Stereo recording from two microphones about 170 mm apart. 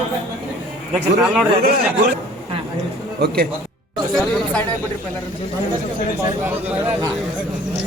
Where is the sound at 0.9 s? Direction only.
5° right (ahead or behind).